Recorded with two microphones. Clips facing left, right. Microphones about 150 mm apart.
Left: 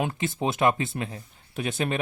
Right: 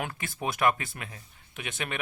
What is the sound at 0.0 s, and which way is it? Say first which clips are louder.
Speech: left 6 dB; 25° left (ahead or behind).